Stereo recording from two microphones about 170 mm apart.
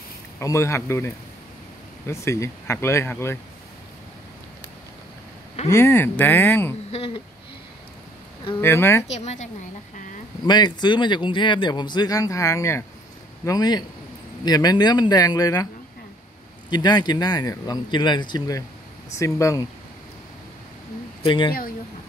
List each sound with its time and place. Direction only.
0.4 s speech: 15° left (ahead or behind)
5.7 s speech: 15° left (ahead or behind)
6.9 s a woman's voice: 35° left (ahead or behind)
8.5 s speech: 15° left (ahead or behind)
9.1 s a woman's voice: 40° left (ahead or behind)
10.4 s speech: 25° left (ahead or behind)
16.7 s speech: 25° left (ahead or behind)
21.2 s speech: 30° left (ahead or behind)